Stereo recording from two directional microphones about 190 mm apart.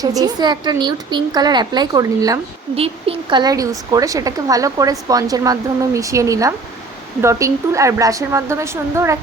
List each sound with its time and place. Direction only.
0.0 s a woman's voice: 20° right (ahead or behind)
2.7 s a woman's voice: 30° right (ahead or behind); by 9.1 s 15° right (ahead or behind)